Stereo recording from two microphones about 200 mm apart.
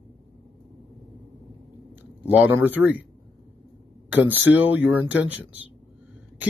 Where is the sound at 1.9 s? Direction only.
10° right (ahead or behind).